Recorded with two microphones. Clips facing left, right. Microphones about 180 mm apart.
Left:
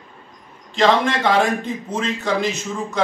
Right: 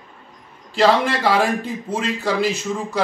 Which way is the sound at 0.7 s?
5° right (ahead or behind).